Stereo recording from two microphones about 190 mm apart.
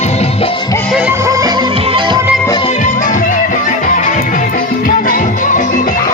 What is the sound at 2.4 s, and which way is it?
Music, 20° left (ahead or behind).